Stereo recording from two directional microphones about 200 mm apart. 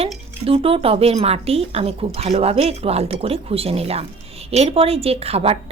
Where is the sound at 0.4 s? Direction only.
30° right (ahead or behind).